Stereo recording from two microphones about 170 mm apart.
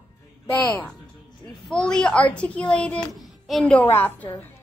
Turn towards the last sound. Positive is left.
turn(degrees=10)  # may be behind; listen again after turning